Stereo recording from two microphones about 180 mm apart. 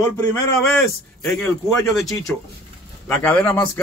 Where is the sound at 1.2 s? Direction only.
Centre (ahead or behind).